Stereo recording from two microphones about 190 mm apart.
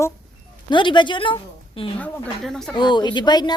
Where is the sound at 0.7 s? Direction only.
25° left (ahead or behind).